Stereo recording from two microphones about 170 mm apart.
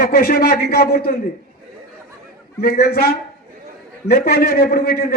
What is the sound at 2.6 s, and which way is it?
A man's voice, 65° left (ahead or behind).